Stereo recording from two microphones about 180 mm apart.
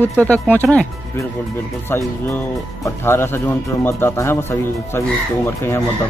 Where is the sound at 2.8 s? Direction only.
15° left (ahead or behind).